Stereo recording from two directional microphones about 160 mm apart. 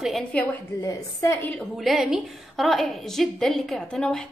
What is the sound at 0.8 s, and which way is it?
Speech, 15° left (ahead or behind).